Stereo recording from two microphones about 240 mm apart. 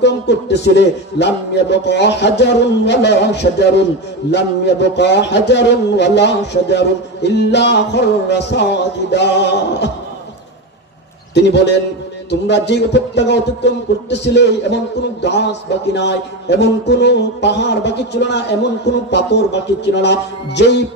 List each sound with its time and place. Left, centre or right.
0.0 s a man's voice: left
11.3 s a man's voice: left
15.9 s a man's voice: left